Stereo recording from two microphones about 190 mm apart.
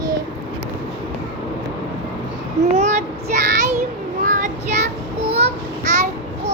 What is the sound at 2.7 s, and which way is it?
Child singing, 35° right (ahead or behind).